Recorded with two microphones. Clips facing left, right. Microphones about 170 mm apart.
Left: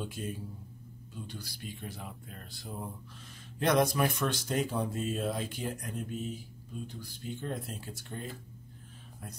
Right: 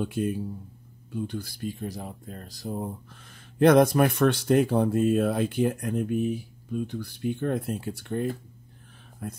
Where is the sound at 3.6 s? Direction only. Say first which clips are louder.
Right 9 dB; 55° right (ahead or behind).